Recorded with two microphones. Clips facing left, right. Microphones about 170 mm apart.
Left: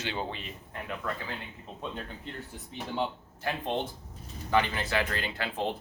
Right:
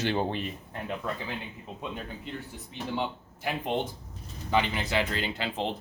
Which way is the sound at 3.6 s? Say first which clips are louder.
Right 2 dB; 15° right (ahead or behind).